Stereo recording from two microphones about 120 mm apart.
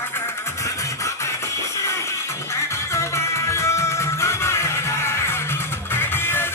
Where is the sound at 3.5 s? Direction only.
25° left (ahead or behind).